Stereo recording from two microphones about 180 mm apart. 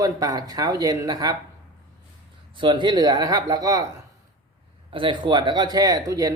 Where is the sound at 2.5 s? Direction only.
25° right (ahead or behind).